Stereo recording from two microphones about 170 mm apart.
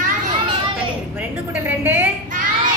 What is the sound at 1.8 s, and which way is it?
Speech, 10° right (ahead or behind).